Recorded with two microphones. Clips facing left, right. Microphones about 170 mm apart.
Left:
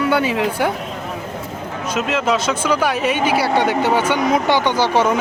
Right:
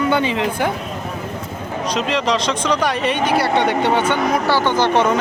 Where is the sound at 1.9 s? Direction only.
5° left (ahead or behind).